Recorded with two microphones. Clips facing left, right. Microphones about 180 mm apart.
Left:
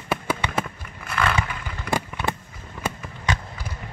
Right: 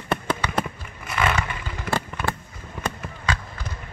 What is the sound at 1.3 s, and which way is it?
Vehicle, 10° left (ahead or behind).